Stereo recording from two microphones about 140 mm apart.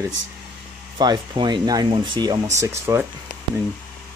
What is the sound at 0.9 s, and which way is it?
Speech, 30° right (ahead or behind).